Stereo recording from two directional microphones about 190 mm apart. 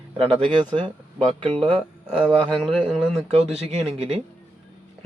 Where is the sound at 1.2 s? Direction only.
30° right (ahead or behind).